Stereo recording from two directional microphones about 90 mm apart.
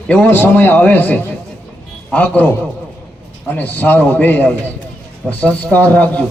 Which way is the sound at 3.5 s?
20° left (ahead or behind).